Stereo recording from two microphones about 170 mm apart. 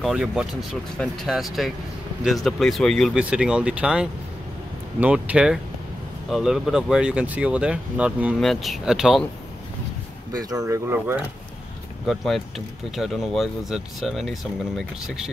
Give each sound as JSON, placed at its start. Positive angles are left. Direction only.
{"t": 0.0, "sound": "speech", "side_deg": -5}
{"t": 10.3, "sound": "speech", "side_deg": -20}
{"t": 12.1, "sound": "speech", "side_deg": 0}